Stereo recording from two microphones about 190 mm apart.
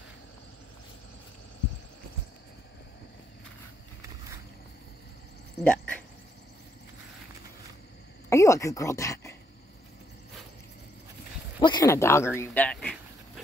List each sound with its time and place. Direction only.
5.6 s speech: 10° left (ahead or behind)
8.3 s speech: 15° left (ahead or behind)
11.6 s speech: 20° left (ahead or behind)